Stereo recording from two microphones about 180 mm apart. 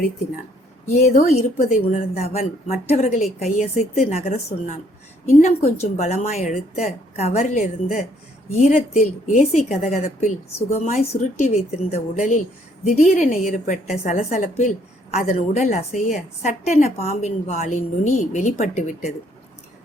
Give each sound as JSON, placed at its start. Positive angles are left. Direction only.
{"t": 0.9, "sound": "a woman's voice", "side_deg": 40}